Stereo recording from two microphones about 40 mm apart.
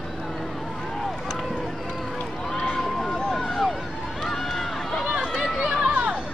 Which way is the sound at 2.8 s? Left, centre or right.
Centre.